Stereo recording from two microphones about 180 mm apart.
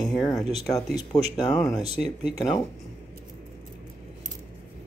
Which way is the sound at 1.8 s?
35° right (ahead or behind).